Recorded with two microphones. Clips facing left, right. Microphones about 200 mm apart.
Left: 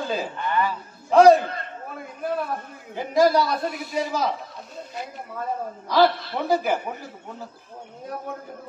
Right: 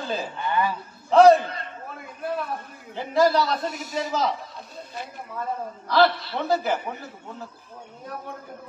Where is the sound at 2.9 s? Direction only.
10° left (ahead or behind).